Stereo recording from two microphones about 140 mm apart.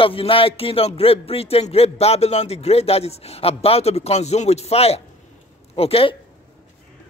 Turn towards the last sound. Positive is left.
turn(degrees=45)  # may be behind; listen again after turning